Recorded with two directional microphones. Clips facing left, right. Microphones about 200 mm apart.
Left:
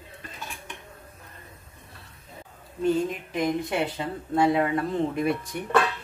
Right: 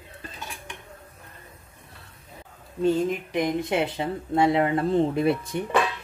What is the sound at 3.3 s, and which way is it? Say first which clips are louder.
Speech: even; 20° right (ahead or behind).